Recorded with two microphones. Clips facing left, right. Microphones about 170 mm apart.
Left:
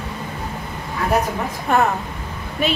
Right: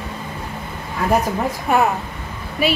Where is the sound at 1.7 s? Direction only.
5° right (ahead or behind).